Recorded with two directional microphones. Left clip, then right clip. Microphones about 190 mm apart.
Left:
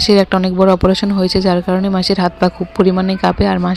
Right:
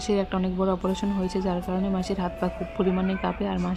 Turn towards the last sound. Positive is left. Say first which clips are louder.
# left 13 dB
turn(degrees=35)  # may be behind; listen again after turning